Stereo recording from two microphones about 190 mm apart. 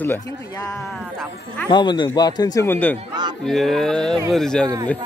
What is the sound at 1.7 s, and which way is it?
Speech, 25° left (ahead or behind).